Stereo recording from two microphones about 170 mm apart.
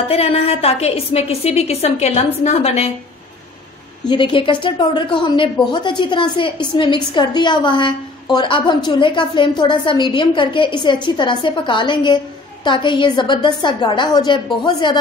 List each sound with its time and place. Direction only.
0.1 s a woman's voice: 35° left (ahead or behind)
4.1 s a woman's voice: 30° left (ahead or behind)